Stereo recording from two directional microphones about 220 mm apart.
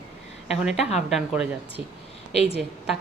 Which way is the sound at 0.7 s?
30° left (ahead or behind).